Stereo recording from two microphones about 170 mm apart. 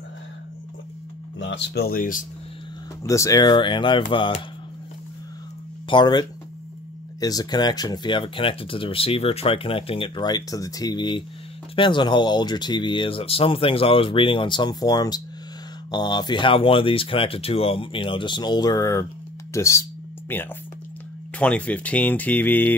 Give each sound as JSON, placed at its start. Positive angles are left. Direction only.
{"t": 1.4, "sound": "speech", "side_deg": 90}
{"t": 3.0, "sound": "speech", "side_deg": 20}
{"t": 5.9, "sound": "speech", "side_deg": 25}
{"t": 19.5, "sound": "a sound", "side_deg": 15}
{"t": 21.4, "sound": "speech", "side_deg": 10}